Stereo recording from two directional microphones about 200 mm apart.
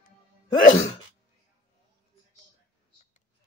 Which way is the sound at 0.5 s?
40° left (ahead or behind).